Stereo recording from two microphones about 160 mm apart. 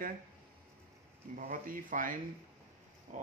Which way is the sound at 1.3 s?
60° right (ahead or behind).